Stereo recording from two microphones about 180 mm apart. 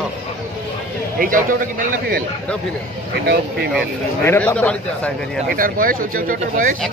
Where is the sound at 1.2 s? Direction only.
50° right (ahead or behind).